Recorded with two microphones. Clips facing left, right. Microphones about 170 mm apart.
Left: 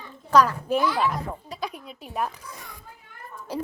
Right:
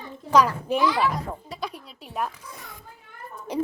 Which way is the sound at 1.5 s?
Centre (ahead or behind).